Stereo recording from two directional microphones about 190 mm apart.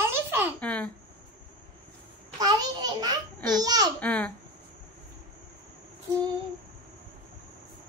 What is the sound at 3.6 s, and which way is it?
Speech, 20° right (ahead or behind).